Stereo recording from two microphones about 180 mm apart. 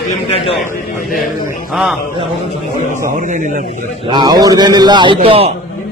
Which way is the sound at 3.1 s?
45° right (ahead or behind).